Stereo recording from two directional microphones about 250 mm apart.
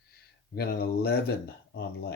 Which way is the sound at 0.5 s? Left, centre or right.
Left.